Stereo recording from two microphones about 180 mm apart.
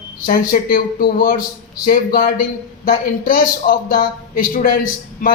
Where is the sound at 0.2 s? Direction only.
50° left (ahead or behind).